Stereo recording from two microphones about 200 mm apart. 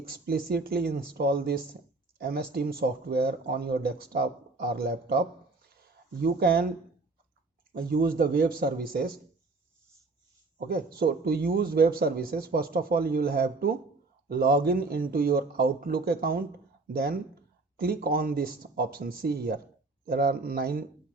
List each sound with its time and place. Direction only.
0.1 s speech: 50° right (ahead or behind)
5.6 s a sound: 50° right (ahead or behind)
7.7 s speech: 45° right (ahead or behind)
10.7 s speech: 50° right (ahead or behind)